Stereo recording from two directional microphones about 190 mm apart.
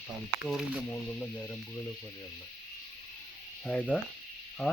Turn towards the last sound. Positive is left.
turn(degrees=5)  # may be behind; listen again after turning